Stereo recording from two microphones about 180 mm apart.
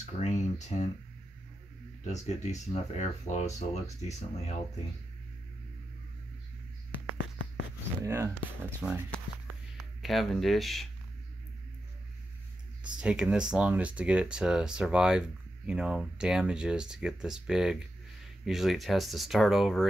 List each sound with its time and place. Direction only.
0.2 s a sound: 40° left (ahead or behind)
2.0 s speech: 40° left (ahead or behind)
7.2 s a sound: 90° left
8.0 s speech: 15° right (ahead or behind)
10.0 s speech: centre (ahead or behind)
12.9 s speech: 5° right (ahead or behind)